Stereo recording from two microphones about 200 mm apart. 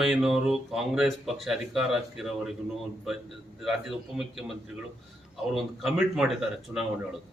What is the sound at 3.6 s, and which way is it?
Speech, centre (ahead or behind).